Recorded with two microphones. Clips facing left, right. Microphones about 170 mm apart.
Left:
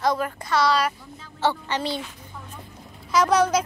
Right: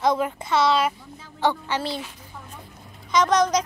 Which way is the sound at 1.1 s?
15° right (ahead or behind).